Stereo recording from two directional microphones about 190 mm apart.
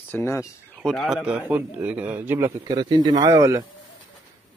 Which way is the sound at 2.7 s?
25° right (ahead or behind).